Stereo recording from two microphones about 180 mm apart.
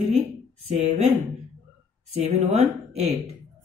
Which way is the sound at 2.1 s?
40° right (ahead or behind).